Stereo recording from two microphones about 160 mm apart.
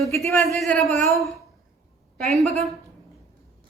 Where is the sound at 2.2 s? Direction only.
Centre (ahead or behind).